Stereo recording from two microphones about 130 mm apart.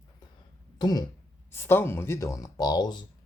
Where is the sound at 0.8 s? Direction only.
30° left (ahead or behind).